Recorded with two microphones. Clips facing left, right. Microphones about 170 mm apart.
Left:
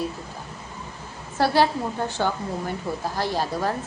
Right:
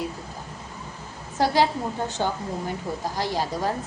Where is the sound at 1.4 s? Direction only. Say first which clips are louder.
Left 1 dB; 15° right (ahead or behind).